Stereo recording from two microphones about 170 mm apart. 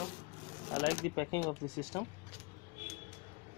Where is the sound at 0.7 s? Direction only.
30° left (ahead or behind).